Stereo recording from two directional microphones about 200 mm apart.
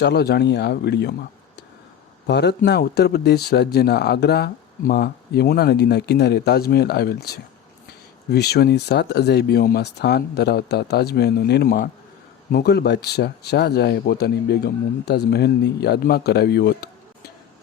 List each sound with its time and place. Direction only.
0.0 s speech: 55° left (ahead or behind)
2.2 s speech: 55° left (ahead or behind)